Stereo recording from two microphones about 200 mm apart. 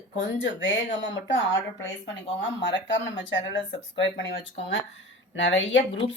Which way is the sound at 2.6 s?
65° left (ahead or behind).